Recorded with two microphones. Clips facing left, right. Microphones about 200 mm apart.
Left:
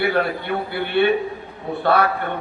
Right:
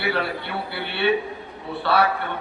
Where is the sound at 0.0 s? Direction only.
50° left (ahead or behind).